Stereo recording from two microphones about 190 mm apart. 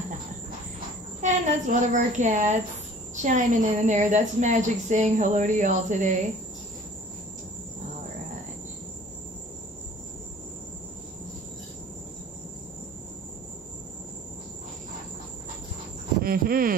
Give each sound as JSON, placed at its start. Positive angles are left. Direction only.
{"t": 1.2, "sound": "a woman's voice", "side_deg": -40}
{"t": 16.2, "sound": "speech", "side_deg": -50}